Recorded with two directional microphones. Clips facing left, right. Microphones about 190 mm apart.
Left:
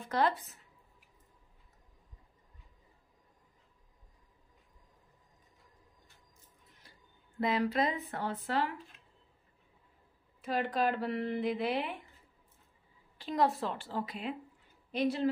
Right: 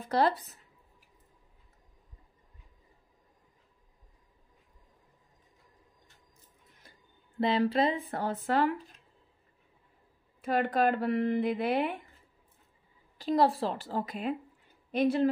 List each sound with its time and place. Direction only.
0.0 s a woman's voice: 35° right (ahead or behind)
7.3 s speech: 30° right (ahead or behind)
10.4 s speech: 55° right (ahead or behind)
13.2 s a woman's voice: 35° right (ahead or behind); by 15.2 s 50° right (ahead or behind)